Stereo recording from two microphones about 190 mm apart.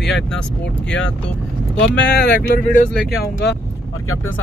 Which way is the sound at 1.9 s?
60° left (ahead or behind).